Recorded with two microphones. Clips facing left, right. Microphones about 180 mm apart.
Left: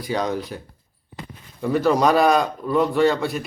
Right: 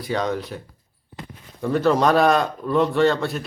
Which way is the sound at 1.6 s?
5° left (ahead or behind).